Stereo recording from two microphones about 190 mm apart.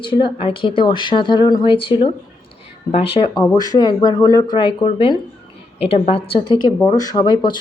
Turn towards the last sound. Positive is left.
turn(degrees=25)  # may be behind; listen again after turning